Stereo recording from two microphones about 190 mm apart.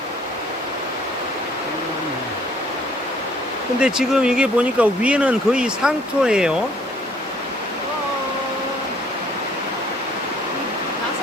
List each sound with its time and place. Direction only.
3.8 s speech: 5° right (ahead or behind)